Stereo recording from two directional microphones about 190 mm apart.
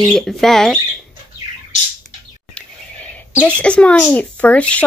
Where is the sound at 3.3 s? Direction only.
5° left (ahead or behind).